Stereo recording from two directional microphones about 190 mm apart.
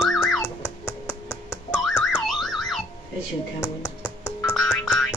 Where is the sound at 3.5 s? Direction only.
15° left (ahead or behind).